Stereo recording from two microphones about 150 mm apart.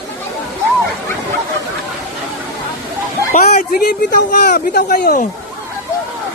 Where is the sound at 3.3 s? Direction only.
60° left (ahead or behind).